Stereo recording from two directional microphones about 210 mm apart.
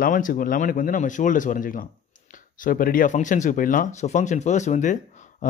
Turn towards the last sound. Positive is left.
turn(degrees=35)  # may be behind; listen again after turning